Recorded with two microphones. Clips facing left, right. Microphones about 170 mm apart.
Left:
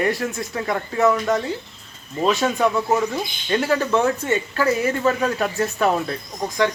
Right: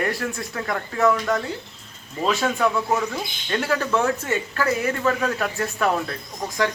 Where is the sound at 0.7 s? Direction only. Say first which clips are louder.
Left 2 dB; 15° left (ahead or behind).